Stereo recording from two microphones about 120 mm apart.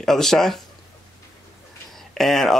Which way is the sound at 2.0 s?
Centre (ahead or behind).